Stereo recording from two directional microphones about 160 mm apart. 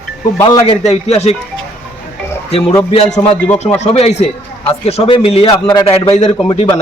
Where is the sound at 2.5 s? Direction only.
35° left (ahead or behind).